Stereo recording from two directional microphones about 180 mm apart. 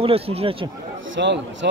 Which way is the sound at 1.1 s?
80° right.